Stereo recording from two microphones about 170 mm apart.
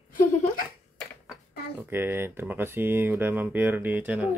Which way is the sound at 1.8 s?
15° right (ahead or behind).